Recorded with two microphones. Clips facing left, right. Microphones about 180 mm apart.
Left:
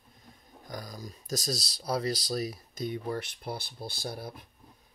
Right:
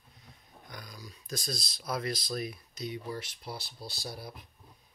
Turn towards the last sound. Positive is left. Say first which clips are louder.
# left 4 dB
turn(degrees=50)  # may be behind; listen again after turning